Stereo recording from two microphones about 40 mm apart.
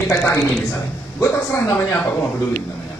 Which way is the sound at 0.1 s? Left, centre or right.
Centre.